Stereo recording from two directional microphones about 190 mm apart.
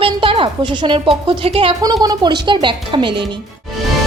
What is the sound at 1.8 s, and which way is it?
Speech, 20° right (ahead or behind).